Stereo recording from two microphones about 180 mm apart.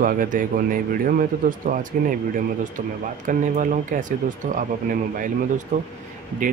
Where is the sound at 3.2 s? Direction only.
45° right (ahead or behind).